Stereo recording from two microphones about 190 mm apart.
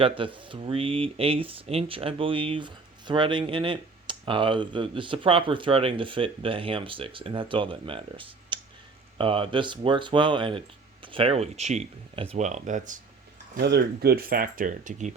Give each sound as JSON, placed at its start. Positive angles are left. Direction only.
{"t": 0.2, "sound": "speech", "side_deg": -25}
{"t": 13.6, "sound": "speech", "side_deg": -60}